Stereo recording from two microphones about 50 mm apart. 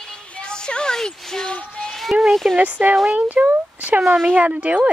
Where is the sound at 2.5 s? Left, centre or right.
Right.